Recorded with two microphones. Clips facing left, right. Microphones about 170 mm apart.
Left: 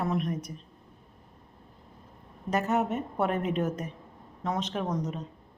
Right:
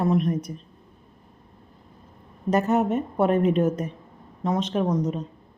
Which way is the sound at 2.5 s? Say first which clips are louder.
Right 6 dB; 30° right (ahead or behind).